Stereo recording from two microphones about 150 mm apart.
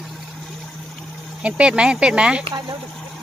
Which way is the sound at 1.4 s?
5° right (ahead or behind).